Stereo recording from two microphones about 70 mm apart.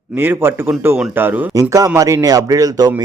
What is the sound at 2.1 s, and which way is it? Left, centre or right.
Speech, right.